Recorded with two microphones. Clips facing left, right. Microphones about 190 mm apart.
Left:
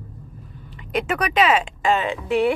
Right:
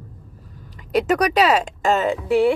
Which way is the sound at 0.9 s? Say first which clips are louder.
Right 5 dB; 40° right (ahead or behind).